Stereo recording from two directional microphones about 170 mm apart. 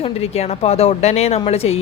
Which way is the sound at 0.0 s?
35° left (ahead or behind).